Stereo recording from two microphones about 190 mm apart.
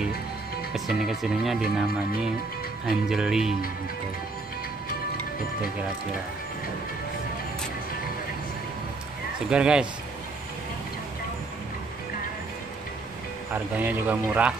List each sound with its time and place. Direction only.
0.7 s speech: centre (ahead or behind)
2.9 s speech: centre (ahead or behind)
9.5 s speech: 5° right (ahead or behind)
13.7 s speech: 10° right (ahead or behind)